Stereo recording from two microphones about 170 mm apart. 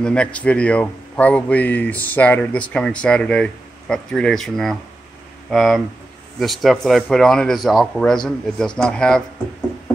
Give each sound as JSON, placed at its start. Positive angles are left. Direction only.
{"t": 0.0, "sound": "a man's voice", "side_deg": 5}